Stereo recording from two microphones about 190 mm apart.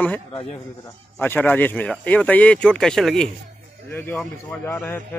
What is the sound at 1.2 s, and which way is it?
A man's voice, 10° left (ahead or behind).